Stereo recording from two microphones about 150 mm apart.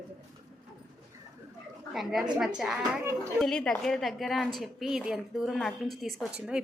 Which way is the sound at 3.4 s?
5° left (ahead or behind).